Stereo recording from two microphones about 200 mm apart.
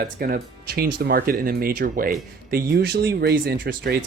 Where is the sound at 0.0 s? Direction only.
50° right (ahead or behind).